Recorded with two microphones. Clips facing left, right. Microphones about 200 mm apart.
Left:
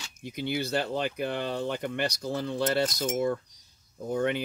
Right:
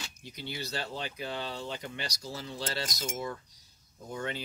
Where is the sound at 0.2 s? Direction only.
55° left (ahead or behind).